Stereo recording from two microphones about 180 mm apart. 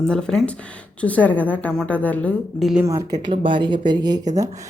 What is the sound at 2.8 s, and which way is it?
Speech, 15° right (ahead or behind).